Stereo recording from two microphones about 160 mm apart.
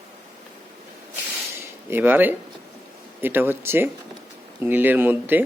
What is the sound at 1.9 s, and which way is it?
Speech, 10° right (ahead or behind).